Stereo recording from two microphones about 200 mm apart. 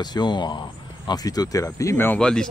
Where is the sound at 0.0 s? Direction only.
20° left (ahead or behind).